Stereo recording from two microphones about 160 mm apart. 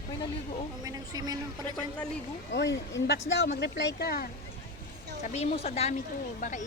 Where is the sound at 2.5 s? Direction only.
90° left.